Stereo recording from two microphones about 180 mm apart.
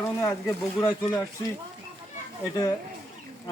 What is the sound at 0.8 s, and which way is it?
Speech, 15° left (ahead or behind).